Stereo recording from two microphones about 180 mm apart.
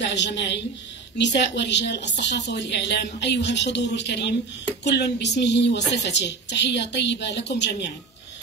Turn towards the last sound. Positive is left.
turn(degrees=75)  # may be behind; listen again after turning